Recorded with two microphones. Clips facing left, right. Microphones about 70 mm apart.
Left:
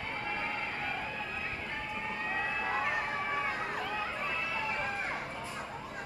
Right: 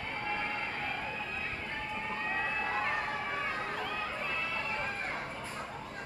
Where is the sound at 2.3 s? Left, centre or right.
Centre.